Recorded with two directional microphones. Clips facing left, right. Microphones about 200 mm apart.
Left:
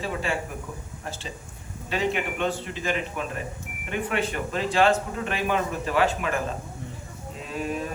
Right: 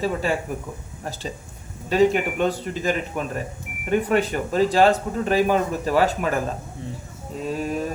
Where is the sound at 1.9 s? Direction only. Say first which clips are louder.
Right 8 dB; 40° right (ahead or behind).